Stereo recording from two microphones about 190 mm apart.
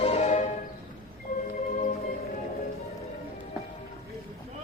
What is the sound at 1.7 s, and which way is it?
Music, 45° left (ahead or behind).